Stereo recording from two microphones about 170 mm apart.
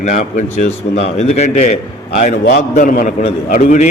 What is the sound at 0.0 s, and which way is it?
A man's voice, 45° left (ahead or behind).